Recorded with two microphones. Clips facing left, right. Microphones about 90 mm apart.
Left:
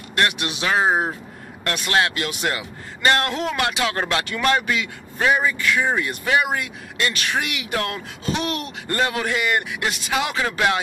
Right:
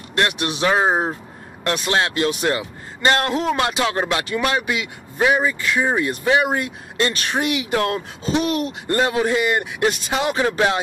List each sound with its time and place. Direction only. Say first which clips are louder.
0.1 s speech: right 1 dB; 25° right (ahead or behind)
4.4 s speech: left 3 dB; 10° right (ahead or behind)